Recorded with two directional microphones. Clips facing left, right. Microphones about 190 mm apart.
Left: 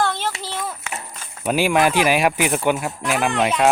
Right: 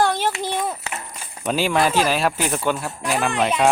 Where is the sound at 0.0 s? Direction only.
15° right (ahead or behind).